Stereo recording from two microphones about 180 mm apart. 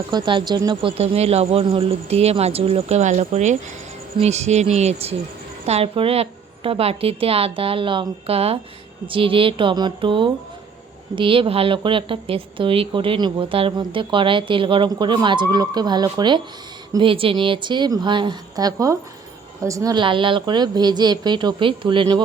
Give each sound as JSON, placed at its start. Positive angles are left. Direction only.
{"t": 0.1, "sound": "speech", "side_deg": -25}